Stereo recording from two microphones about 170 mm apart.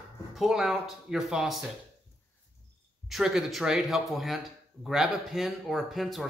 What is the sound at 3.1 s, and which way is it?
Speech, centre (ahead or behind).